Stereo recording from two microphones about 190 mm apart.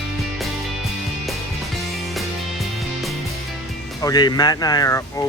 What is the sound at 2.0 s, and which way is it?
Music, centre (ahead or behind).